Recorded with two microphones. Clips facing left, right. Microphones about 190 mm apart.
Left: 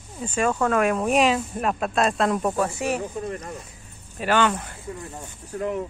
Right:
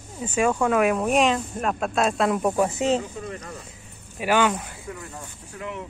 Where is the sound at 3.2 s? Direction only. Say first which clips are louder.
Left 4 dB; 40° left (ahead or behind).